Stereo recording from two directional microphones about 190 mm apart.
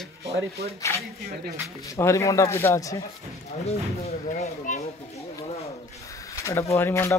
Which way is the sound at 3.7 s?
35° left (ahead or behind).